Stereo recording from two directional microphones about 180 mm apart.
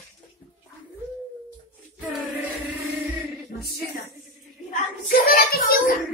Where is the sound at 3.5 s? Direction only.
60° left (ahead or behind).